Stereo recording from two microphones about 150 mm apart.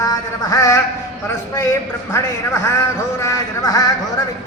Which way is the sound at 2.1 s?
20° left (ahead or behind).